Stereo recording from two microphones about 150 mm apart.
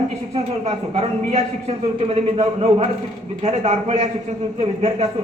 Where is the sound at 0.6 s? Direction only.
45° right (ahead or behind).